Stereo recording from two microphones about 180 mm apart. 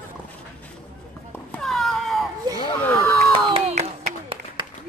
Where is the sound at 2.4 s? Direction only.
20° right (ahead or behind).